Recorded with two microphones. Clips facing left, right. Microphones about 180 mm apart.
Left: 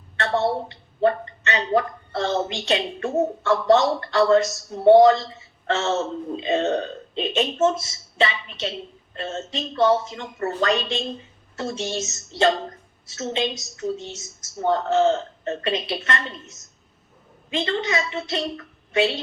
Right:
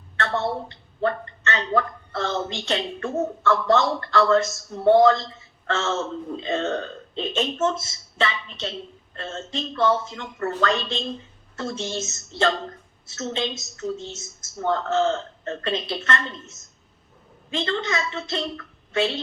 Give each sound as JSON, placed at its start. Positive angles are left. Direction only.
{"t": 0.2, "sound": "a woman's voice", "side_deg": 20}
{"t": 1.0, "sound": "a woman's voice", "side_deg": 15}
{"t": 9.1, "sound": "a man's voice", "side_deg": 15}
{"t": 17.5, "sound": "a man's voice", "side_deg": 15}